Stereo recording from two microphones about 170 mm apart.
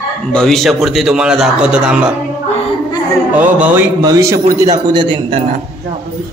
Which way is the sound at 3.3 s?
10° right (ahead or behind).